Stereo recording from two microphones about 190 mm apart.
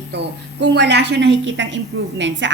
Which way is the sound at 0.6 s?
65° right (ahead or behind).